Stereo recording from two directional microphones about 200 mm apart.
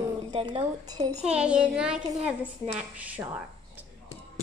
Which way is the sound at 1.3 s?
5° right (ahead or behind).